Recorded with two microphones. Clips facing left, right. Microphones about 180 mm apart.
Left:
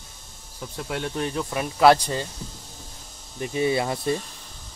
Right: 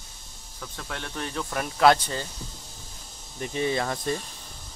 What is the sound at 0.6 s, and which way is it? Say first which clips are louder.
Speech: left 6 dB; 15° left (ahead or behind).